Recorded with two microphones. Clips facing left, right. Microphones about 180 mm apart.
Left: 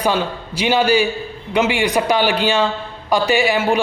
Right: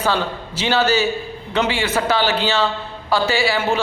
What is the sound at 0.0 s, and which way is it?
A man's voice, 15° left (ahead or behind).